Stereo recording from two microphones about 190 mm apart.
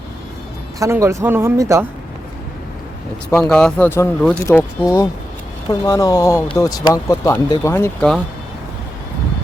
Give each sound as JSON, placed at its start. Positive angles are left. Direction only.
{"t": 0.8, "sound": "speech", "side_deg": -15}
{"t": 3.3, "sound": "speech", "side_deg": 5}